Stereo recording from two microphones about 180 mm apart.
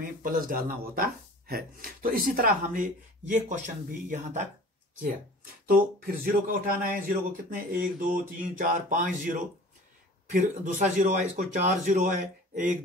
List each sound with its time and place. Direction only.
0.2 s speech: 50° right (ahead or behind)
5.7 s speech: 55° right (ahead or behind)